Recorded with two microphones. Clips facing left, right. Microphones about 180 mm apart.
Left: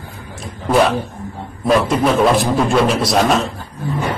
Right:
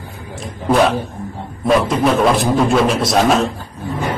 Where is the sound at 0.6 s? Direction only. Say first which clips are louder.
Even; centre (ahead or behind).